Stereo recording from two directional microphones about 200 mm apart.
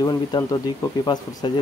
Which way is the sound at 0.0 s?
20° left (ahead or behind).